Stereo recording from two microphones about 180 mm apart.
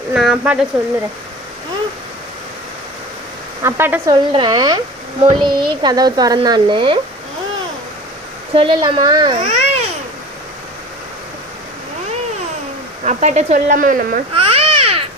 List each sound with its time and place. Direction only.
0.1 s speech: centre (ahead or behind)
3.6 s speech: 15° right (ahead or behind)
4.1 s speech: 25° right (ahead or behind)
8.5 s speech: 25° right (ahead or behind)
9.4 s babbling: 40° right (ahead or behind)
13.1 s speech: 40° right (ahead or behind)
14.3 s babbling: 30° right (ahead or behind)